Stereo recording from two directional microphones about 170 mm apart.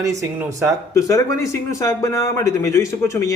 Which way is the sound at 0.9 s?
20° left (ahead or behind).